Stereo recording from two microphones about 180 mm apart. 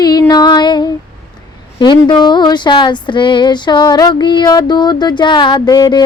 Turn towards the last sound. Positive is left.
turn(degrees=25)  # may be behind; listen again after turning